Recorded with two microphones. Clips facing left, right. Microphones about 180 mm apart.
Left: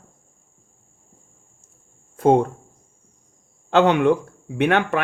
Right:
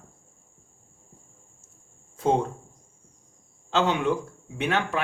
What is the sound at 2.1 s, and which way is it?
Speech, 55° left (ahead or behind).